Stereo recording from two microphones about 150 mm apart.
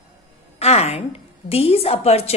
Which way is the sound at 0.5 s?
45° left (ahead or behind).